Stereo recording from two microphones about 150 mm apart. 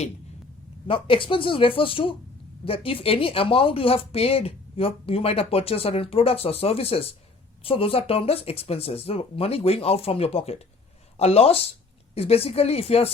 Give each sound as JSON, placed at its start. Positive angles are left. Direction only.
{"t": 0.9, "sound": "speech", "side_deg": 35}